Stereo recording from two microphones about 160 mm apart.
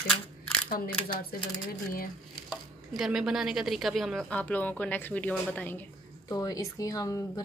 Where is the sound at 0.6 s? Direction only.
65° left (ahead or behind).